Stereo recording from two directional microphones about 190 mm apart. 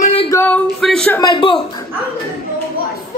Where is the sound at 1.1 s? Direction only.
20° left (ahead or behind).